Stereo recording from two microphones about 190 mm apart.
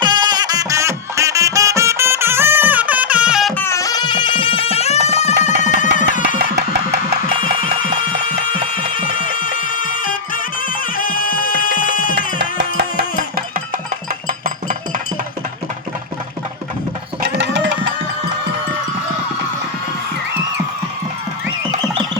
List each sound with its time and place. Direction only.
0.0 s music: 25° right (ahead or behind); by 3.5 s 5° right (ahead or behind)
3.5 s music: 15° left (ahead or behind); by 6.4 s 45° left (ahead or behind)
8.3 s music: 45° left (ahead or behind)
12.4 s music: 60° right (ahead or behind)
14.3 s music: 45° right (ahead or behind)
17.2 s music: 65° right (ahead or behind)